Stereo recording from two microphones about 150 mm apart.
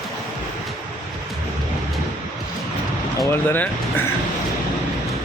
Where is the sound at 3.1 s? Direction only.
15° left (ahead or behind).